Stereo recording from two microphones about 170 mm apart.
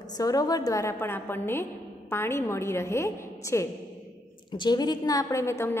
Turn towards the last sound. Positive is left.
turn(degrees=15)  # may be behind; listen again after turning